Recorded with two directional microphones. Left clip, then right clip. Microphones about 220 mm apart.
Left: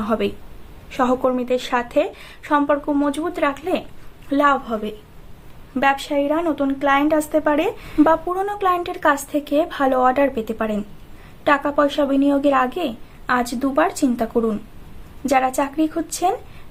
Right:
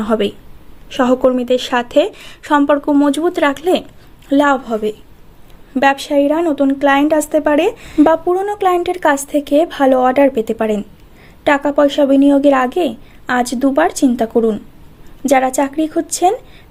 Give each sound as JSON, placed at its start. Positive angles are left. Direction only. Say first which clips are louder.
{"t": 0.0, "sound": "a woman's voice", "louder": "right 5 dB", "side_deg": -30}